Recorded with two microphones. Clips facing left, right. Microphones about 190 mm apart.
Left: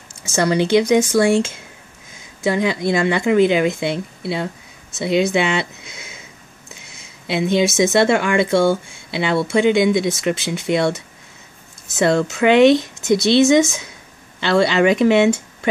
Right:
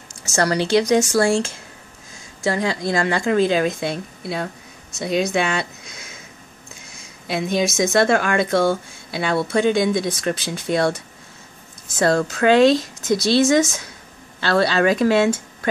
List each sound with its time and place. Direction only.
0.5 s a woman's voice: 20° left (ahead or behind)
7.2 s a woman's voice: 25° left (ahead or behind)
12.3 s a woman's voice: 20° left (ahead or behind)